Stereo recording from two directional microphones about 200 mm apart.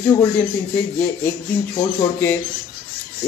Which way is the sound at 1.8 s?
10° left (ahead or behind).